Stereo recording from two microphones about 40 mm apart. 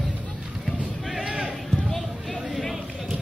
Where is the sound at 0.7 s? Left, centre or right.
Centre.